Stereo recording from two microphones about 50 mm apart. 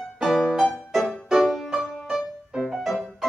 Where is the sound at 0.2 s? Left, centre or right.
Centre.